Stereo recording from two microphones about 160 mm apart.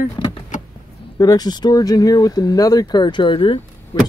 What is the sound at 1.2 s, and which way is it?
Speech, 25° left (ahead or behind).